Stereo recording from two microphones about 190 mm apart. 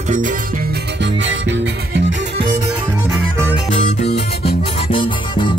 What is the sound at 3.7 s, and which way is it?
Music, 35° left (ahead or behind).